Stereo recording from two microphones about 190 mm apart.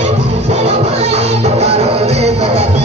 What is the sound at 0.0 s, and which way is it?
Music, 35° right (ahead or behind).